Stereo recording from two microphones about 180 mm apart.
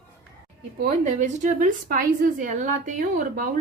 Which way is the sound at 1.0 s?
45° right (ahead or behind).